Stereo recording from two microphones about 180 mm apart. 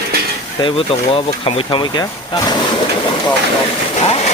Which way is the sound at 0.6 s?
30° left (ahead or behind).